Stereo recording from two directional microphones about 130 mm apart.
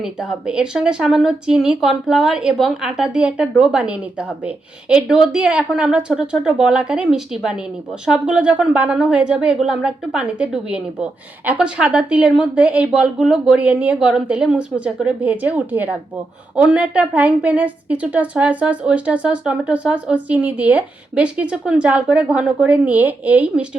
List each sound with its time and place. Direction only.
0.0 s a woman's voice: 5° right (ahead or behind)